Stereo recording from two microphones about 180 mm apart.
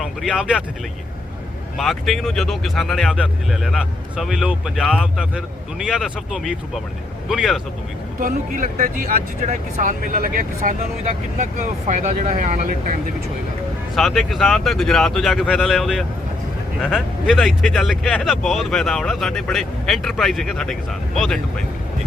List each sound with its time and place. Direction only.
0.0 s speech: 5° right (ahead or behind)
1.8 s speech: centre (ahead or behind)
8.2 s speech: 45° right (ahead or behind)
13.9 s speech: centre (ahead or behind)